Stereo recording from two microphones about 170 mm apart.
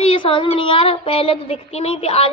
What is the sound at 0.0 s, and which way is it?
Child singing, 30° left (ahead or behind).